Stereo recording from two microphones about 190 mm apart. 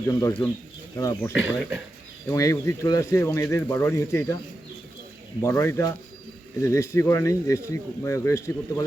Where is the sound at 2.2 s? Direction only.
15° left (ahead or behind).